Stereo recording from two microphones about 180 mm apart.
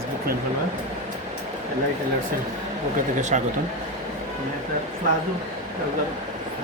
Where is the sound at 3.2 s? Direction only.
40° right (ahead or behind).